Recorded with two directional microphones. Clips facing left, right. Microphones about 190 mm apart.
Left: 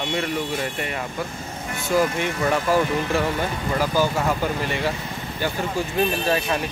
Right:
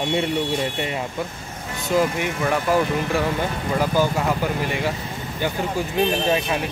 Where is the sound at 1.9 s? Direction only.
15° right (ahead or behind).